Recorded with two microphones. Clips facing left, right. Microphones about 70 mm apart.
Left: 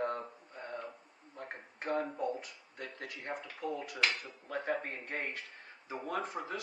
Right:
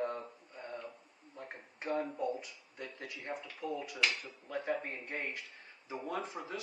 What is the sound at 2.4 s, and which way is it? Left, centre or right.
Speech, left.